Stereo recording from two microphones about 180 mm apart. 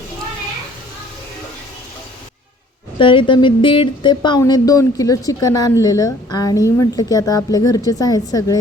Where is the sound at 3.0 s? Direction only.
30° left (ahead or behind).